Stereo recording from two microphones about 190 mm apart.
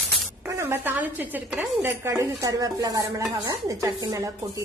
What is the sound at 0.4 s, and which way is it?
A woman's voice, 10° right (ahead or behind).